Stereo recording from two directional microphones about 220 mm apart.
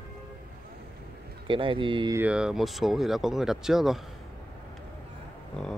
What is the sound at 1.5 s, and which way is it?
Speech, 25° right (ahead or behind).